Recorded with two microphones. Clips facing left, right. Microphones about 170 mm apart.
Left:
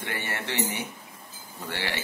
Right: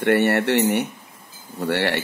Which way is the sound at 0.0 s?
65° right (ahead or behind).